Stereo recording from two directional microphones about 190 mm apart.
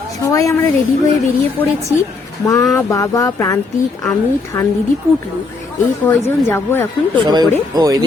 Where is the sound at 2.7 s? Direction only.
15° left (ahead or behind).